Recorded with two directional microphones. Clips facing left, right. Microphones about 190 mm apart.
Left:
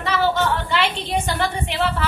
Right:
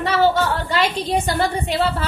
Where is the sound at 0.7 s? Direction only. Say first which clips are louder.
Right 2 dB; 40° right (ahead or behind).